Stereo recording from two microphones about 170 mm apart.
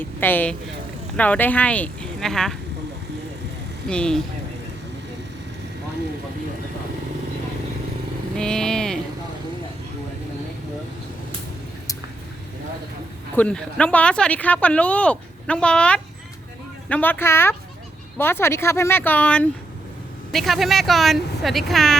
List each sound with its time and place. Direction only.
0.0 s speech: 10° left (ahead or behind)
3.8 s speech: 5° left (ahead or behind)
8.4 s vehicle: 5° left (ahead or behind)
13.3 s speech: 5° left (ahead or behind)